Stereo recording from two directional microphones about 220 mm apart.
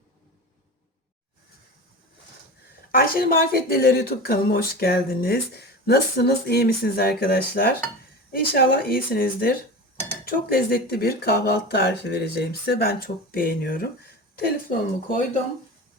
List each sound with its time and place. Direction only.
2.9 s speech: 40° left (ahead or behind)